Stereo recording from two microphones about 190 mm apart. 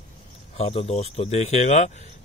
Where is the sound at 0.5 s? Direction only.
35° left (ahead or behind).